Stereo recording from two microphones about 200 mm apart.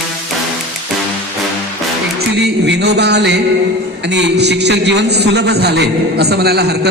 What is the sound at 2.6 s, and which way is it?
A man's voice, 55° right (ahead or behind).